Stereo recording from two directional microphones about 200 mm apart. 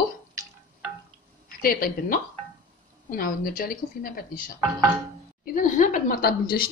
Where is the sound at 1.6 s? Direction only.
45° left (ahead or behind).